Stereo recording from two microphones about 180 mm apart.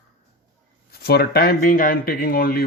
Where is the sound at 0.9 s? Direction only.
60° left (ahead or behind).